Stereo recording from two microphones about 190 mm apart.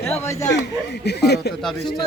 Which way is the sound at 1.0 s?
60° left (ahead or behind).